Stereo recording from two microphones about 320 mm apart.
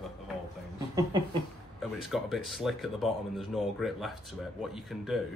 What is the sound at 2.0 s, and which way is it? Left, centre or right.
Speech, centre.